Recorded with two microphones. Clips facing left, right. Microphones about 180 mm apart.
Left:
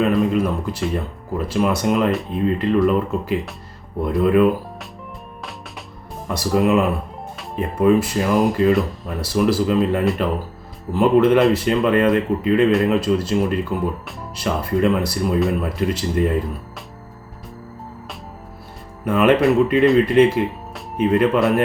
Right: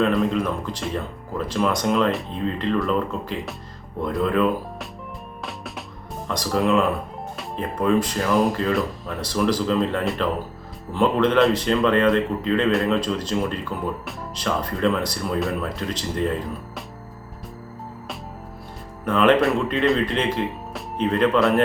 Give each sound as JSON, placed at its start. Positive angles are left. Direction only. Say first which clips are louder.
{"t": 0.0, "sound": "speech", "louder": "left 3 dB", "side_deg": 5}
{"t": 6.2, "sound": "speech", "louder": "left 4 dB", "side_deg": 10}
{"t": 19.0, "sound": "speech", "louder": "left 3 dB", "side_deg": 10}